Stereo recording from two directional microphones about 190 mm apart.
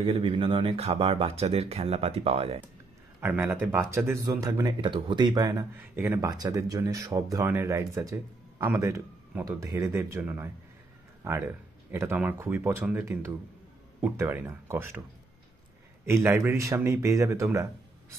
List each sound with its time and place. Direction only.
0.0 s speech: 30° right (ahead or behind)
3.2 s speech: 10° right (ahead or behind)
16.1 s speech: 15° right (ahead or behind)